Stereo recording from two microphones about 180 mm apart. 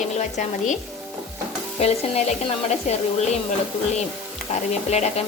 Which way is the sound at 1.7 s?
35° left (ahead or behind).